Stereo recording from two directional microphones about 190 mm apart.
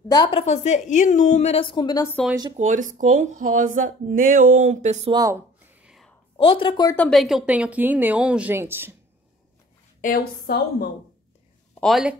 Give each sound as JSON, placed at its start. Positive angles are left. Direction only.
{"t": 0.1, "sound": "a woman's voice", "side_deg": 25}
{"t": 2.5, "sound": "speech", "side_deg": -40}
{"t": 5.1, "sound": "a sound", "side_deg": -15}
{"t": 6.3, "sound": "speech", "side_deg": 25}
{"t": 7.0, "sound": "a woman's voice", "side_deg": 0}
{"t": 10.0, "sound": "a woman's voice", "side_deg": 50}
{"t": 11.7, "sound": "speech", "side_deg": 0}